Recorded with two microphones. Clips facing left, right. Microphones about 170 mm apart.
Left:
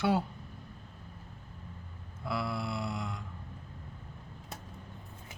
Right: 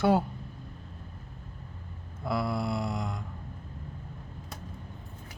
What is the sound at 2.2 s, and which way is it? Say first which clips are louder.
Mantra: right 5 dB; 40° right (ahead or behind).